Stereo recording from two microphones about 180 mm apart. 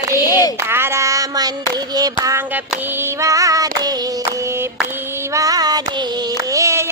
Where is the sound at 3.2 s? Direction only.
20° right (ahead or behind).